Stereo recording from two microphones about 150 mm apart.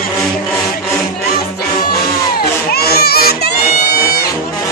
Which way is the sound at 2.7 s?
90° left.